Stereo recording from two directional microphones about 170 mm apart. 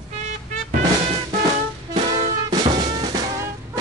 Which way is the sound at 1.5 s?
40° right (ahead or behind).